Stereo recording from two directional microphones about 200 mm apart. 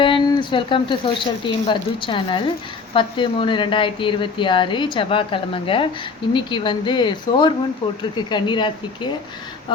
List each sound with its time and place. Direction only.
0.0 s speech: 25° left (ahead or behind)